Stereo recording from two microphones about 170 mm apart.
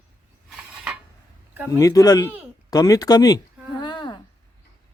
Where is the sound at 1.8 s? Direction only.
20° left (ahead or behind).